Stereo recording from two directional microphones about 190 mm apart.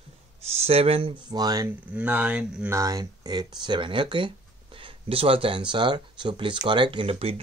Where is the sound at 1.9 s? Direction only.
10° right (ahead or behind).